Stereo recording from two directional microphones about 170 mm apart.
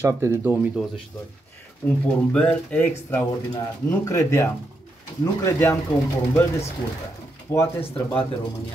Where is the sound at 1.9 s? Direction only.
5° left (ahead or behind).